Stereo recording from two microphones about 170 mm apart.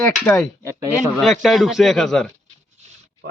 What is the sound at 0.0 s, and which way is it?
A man's voice, 5° left (ahead or behind).